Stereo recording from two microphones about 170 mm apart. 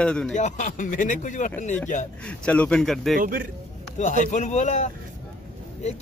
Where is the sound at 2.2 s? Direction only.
5° left (ahead or behind).